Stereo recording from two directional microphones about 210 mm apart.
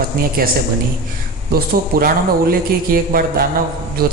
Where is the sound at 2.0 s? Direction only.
45° right (ahead or behind).